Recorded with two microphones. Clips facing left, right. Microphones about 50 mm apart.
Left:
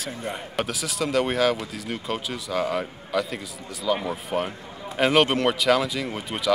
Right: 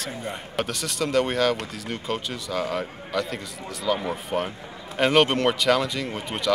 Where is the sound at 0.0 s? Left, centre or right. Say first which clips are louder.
Left 1 dB; centre.